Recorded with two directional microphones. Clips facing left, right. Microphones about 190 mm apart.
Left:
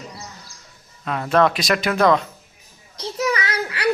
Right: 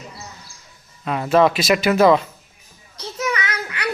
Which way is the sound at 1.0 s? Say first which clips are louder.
Right 2 dB; 5° right (ahead or behind).